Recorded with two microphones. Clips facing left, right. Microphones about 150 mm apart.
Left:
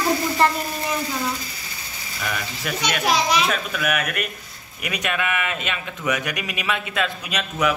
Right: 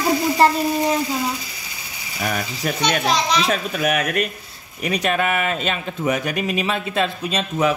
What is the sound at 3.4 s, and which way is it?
Speech, 35° right (ahead or behind).